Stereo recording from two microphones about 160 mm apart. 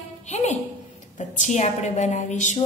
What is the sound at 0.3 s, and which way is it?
A woman's voice, 45° left (ahead or behind).